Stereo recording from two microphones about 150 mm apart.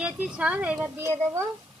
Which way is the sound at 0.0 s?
5° right (ahead or behind).